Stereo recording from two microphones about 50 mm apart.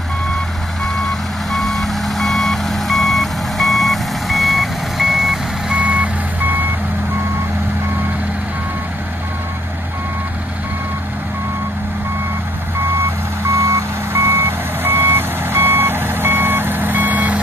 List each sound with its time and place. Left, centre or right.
1.5 s reversing beeps: centre
5.8 s reversing beeps: right
14.1 s reversing beeps: right